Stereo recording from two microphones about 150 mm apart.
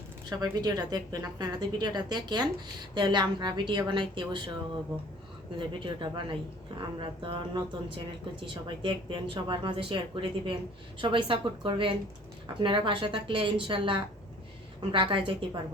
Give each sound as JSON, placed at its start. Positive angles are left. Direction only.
{"t": 0.3, "sound": "a woman's voice", "side_deg": -25}
{"t": 5.5, "sound": "speech", "side_deg": -35}